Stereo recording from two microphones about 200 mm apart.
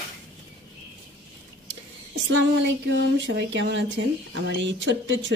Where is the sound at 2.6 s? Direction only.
60° right (ahead or behind).